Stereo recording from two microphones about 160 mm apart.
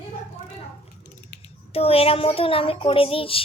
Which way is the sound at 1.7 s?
35° left (ahead or behind).